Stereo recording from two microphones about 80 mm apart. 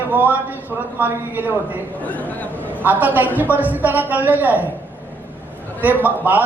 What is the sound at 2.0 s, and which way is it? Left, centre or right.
Speech, centre.